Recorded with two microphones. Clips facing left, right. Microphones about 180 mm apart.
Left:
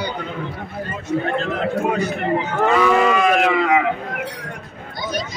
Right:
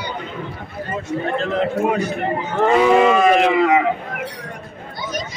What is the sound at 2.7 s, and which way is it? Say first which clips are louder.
Speech: right 3 dB; 20° right (ahead or behind).